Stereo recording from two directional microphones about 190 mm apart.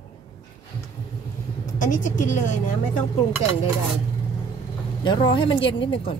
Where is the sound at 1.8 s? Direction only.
45° left (ahead or behind).